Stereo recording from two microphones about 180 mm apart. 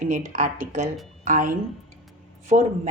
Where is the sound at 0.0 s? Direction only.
40° right (ahead or behind).